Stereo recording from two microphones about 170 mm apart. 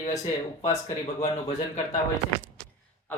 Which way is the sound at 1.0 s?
40° left (ahead or behind).